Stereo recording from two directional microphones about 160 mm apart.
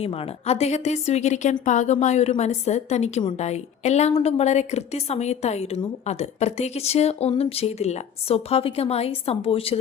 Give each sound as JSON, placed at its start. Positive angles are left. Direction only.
{"t": 0.0, "sound": "a woman's voice", "side_deg": 40}